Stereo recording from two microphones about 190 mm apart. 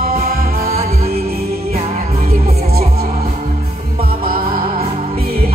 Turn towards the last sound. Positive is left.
turn(degrees=-50)  # may be behind; listen again after turning